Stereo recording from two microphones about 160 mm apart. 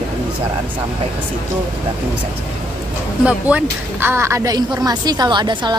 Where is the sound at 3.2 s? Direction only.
10° right (ahead or behind).